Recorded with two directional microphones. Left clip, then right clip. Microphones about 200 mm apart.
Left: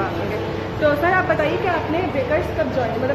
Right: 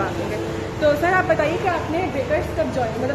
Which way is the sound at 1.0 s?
20° right (ahead or behind).